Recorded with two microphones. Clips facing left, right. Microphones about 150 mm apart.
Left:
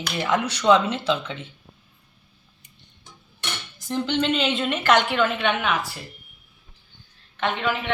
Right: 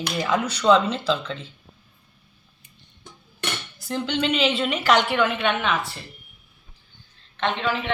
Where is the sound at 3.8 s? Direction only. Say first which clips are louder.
Left 1 dB; 5° right (ahead or behind).